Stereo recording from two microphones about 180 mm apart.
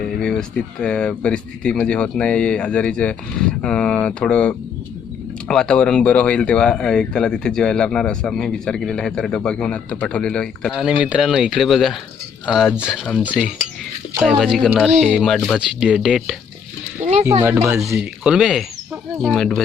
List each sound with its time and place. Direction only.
0.0 s speech: 5° left (ahead or behind)
17.0 s speech: 40° right (ahead or behind)
17.4 s speech: 10° right (ahead or behind)